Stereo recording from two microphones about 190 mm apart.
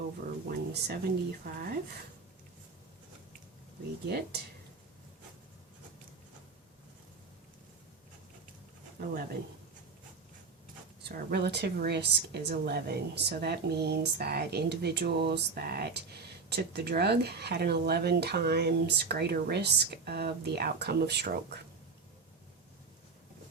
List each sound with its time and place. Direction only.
0.7 s speech: 55° right (ahead or behind)
4.0 s a woman's voice: 60° right (ahead or behind)
9.0 s speech: 50° right (ahead or behind)
11.1 s a woman's voice: 60° right (ahead or behind)